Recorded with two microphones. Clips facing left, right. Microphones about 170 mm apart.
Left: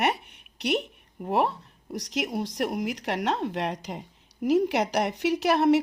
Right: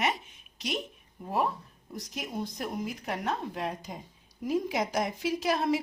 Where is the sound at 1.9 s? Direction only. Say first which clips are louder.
Left 7 dB; 80° left.